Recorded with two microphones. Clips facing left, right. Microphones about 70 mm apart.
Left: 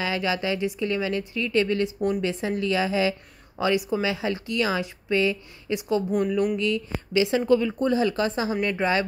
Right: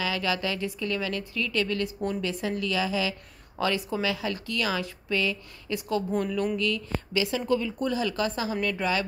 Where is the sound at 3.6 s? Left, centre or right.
Centre.